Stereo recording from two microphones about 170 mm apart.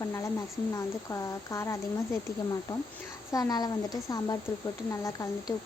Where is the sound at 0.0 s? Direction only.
20° left (ahead or behind).